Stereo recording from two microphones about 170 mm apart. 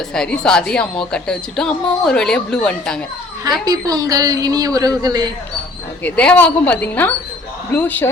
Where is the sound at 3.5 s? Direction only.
20° right (ahead or behind).